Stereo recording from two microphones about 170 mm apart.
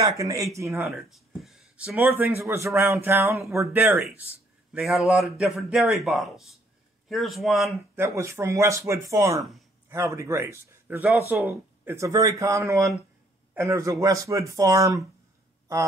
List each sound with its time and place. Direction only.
0.0 s speech: 20° right (ahead or behind)
0.9 s speech: centre (ahead or behind)
4.7 s speech: centre (ahead or behind)
7.9 s speech: 15° right (ahead or behind)
9.4 s a man's voice: centre (ahead or behind)
9.8 s speech: 15° right (ahead or behind)